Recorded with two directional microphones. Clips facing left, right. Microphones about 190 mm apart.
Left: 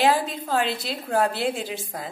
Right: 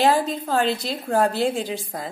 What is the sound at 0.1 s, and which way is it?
Speech, 40° right (ahead or behind).